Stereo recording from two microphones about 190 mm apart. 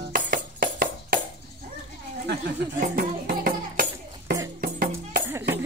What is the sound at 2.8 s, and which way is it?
Music, 50° right (ahead or behind).